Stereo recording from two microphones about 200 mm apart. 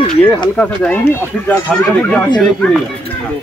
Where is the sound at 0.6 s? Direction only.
10° left (ahead or behind).